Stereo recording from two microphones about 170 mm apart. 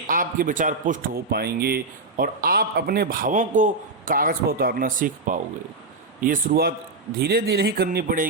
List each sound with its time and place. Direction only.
0.1 s a man's voice: 55° right (ahead or behind)